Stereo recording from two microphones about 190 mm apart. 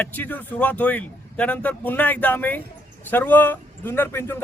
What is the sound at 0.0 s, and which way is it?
Speech, 10° left (ahead or behind).